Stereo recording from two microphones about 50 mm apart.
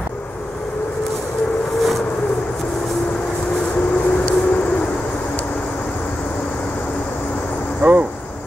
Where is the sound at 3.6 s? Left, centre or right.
Left.